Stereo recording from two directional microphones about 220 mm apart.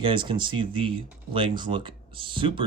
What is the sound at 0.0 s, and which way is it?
Speech, 20° right (ahead or behind).